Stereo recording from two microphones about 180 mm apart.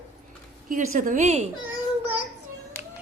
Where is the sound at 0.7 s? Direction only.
45° right (ahead or behind).